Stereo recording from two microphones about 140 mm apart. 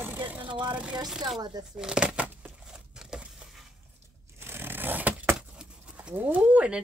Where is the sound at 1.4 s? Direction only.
30° right (ahead or behind).